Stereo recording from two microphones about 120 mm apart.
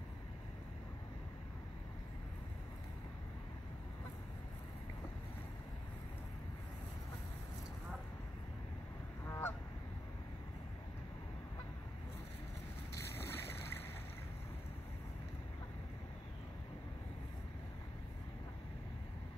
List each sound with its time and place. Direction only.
9.2 s goose: 20° left (ahead or behind)
12.9 s boat: 20° left (ahead or behind)